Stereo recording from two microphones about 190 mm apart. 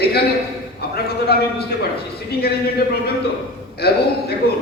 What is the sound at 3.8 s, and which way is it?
Speech, 55° left (ahead or behind).